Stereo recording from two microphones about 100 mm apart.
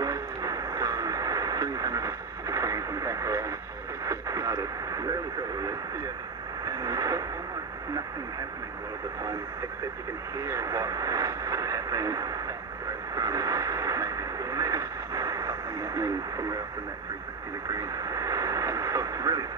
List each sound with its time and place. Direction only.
0.0 s radio: 35° right (ahead or behind)
6.6 s radio: 40° right (ahead or behind)
10.4 s speech: 35° right (ahead or behind)
13.1 s radio: 35° right (ahead or behind)
17.6 s radio: 35° right (ahead or behind)